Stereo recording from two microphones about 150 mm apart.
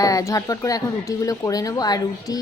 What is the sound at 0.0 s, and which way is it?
Speech, 25° left (ahead or behind).